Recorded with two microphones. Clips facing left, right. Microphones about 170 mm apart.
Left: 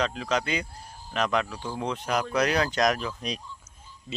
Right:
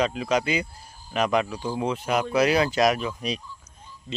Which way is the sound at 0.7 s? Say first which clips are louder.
Left 3 dB; 75° left (ahead or behind).